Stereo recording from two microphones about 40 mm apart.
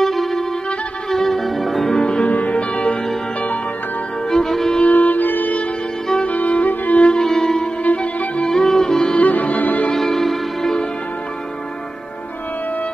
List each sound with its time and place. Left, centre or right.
0.0 s music: centre
1.9 s music: centre
2.2 s music: left
4.3 s music: centre
4.8 s music: left
6.2 s music: left
7.2 s music: centre
7.8 s music: left
8.5 s music: centre
9.1 s music: left
9.9 s music: centre